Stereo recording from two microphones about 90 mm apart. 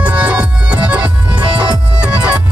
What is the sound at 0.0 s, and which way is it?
Music, 15° right (ahead or behind).